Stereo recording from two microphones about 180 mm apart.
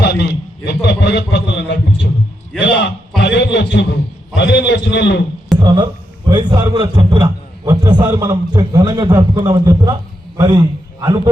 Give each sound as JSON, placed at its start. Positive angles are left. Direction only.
{"t": 0.0, "sound": "a man's voice", "side_deg": 70}
{"t": 2.6, "sound": "a man's voice", "side_deg": 85}
{"t": 5.5, "sound": "a man's voice", "side_deg": -25}
{"t": 10.3, "sound": "a sound", "side_deg": -20}